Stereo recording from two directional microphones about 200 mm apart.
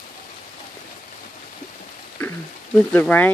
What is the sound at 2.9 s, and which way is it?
Speech, 10° left (ahead or behind).